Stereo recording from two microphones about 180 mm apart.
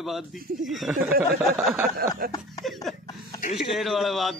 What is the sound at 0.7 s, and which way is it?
A man's voice, centre (ahead or behind).